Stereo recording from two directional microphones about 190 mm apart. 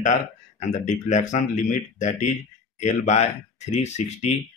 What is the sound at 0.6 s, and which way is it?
Speech, 40° left (ahead or behind).